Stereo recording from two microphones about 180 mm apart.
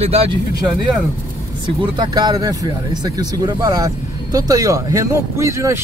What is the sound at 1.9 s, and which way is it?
Speech, 25° right (ahead or behind).